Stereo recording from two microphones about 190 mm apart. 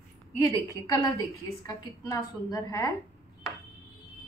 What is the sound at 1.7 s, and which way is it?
A woman's voice, 15° left (ahead or behind).